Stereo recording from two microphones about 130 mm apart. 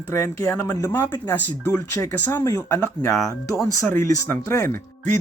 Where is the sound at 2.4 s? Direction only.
25° left (ahead or behind).